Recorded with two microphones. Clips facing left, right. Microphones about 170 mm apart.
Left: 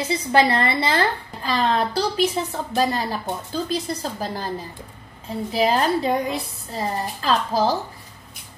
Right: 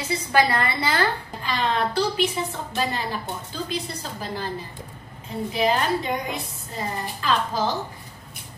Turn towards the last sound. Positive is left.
turn(degrees=35)  # may be behind; listen again after turning